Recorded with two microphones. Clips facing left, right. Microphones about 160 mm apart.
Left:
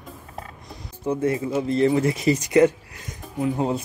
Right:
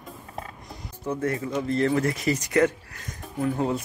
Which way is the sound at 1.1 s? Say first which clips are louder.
Left 4 dB; 15° left (ahead or behind).